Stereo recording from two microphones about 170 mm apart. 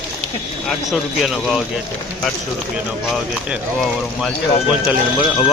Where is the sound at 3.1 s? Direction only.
5° right (ahead or behind).